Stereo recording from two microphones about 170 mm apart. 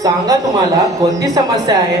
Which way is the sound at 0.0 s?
20° right (ahead or behind).